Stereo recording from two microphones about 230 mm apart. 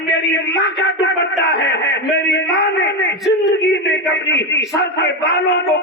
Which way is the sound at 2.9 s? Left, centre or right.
Left.